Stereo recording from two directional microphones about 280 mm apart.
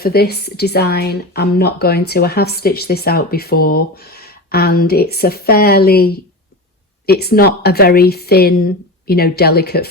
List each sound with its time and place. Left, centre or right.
0.0 s speech: left